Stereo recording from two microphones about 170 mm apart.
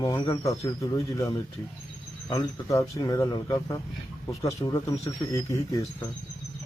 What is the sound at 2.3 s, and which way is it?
Speech, 20° left (ahead or behind).